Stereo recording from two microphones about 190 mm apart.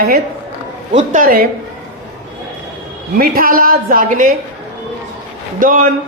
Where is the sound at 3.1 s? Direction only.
50° right (ahead or behind).